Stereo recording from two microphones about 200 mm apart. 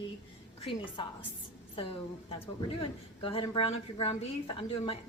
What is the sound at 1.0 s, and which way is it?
A woman's voice, 25° left (ahead or behind).